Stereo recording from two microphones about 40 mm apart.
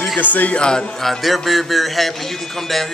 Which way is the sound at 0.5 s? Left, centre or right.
Left.